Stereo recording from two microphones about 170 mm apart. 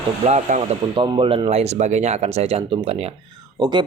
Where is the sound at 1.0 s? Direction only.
30° right (ahead or behind).